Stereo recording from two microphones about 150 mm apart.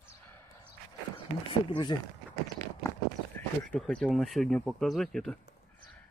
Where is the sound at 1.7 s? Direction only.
30° left (ahead or behind).